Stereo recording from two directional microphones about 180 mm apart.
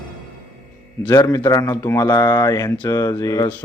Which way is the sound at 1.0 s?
20° left (ahead or behind).